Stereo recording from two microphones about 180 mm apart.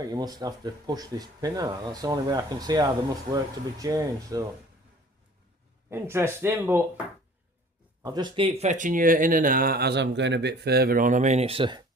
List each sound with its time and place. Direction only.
0.0 s speech: 20° right (ahead or behind)
5.9 s speech: 15° right (ahead or behind)
8.0 s speech: 25° right (ahead or behind)